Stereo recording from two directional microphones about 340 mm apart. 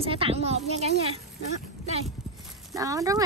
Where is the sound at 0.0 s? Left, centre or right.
Centre.